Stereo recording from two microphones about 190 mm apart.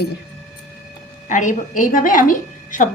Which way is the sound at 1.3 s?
40° left (ahead or behind).